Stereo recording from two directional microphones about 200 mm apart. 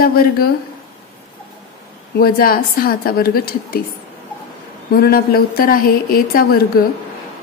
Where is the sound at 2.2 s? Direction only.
45° left (ahead or behind).